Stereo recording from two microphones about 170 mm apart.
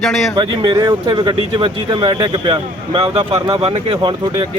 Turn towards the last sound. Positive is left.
turn(degrees=-30)  # may be behind; listen again after turning